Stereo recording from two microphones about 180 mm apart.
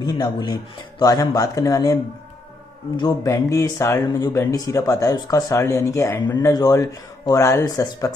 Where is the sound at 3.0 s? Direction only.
20° left (ahead or behind).